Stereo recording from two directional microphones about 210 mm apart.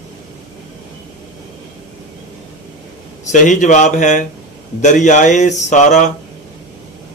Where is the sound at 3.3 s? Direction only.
35° left (ahead or behind).